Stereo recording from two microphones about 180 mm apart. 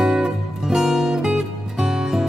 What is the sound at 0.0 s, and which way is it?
Music, 5° right (ahead or behind).